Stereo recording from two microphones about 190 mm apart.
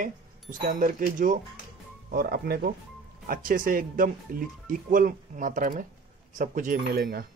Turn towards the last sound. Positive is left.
turn(degrees=-55)  # may be behind; listen again after turning